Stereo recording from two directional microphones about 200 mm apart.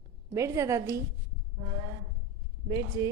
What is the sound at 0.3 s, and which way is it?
Speech, 15° right (ahead or behind).